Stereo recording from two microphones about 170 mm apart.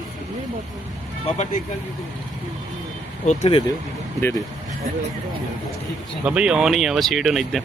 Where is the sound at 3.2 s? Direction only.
35° left (ahead or behind).